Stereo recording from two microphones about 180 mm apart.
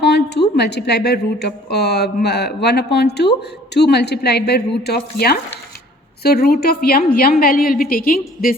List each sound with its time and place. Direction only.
0.0 s a woman's voice: 65° left (ahead or behind)